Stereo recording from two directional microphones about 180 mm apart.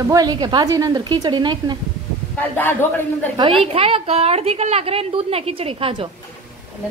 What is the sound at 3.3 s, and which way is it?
A woman's voice, 30° right (ahead or behind).